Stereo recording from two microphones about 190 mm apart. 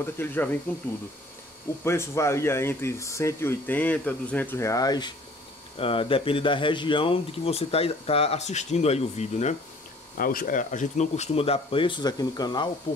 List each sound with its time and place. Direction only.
0.0 s speech: 10° left (ahead or behind)
1.9 s speech: 15° left (ahead or behind); by 9.6 s 35° left (ahead or behind)
10.1 s speech: 50° left (ahead or behind); by 12.6 s 20° left (ahead or behind)